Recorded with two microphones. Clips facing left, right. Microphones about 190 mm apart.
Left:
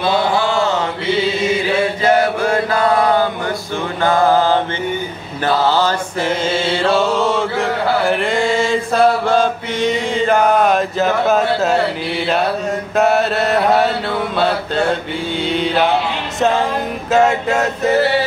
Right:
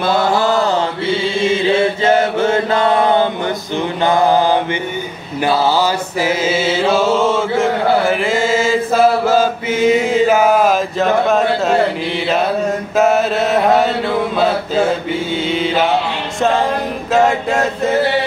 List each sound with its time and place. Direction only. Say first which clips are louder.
0.0 s mantra: right 1 dB; 40° right (ahead or behind); by 11.7 s centre (ahead or behind)
12.9 s mantra: right 1 dB; centre (ahead or behind)
16.3 s music: even; centre (ahead or behind)
17.1 s mantra: even; centre (ahead or behind)